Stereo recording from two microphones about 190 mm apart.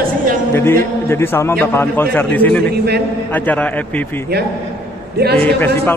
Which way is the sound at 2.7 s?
60° right (ahead or behind).